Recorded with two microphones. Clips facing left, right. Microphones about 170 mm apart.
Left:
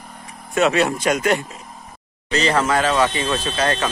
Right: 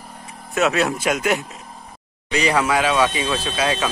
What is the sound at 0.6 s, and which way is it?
Speech, centre (ahead or behind).